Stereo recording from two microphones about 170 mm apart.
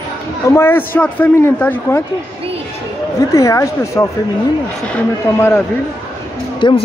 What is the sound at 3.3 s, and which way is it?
Speech, 20° left (ahead or behind).